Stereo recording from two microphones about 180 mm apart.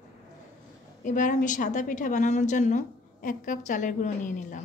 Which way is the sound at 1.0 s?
45° left (ahead or behind).